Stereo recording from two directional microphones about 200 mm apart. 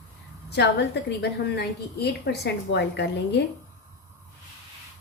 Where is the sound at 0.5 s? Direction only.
55° left (ahead or behind).